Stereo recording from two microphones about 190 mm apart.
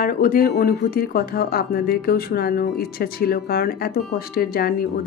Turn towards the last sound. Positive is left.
turn(degrees=50)  # may be behind; listen again after turning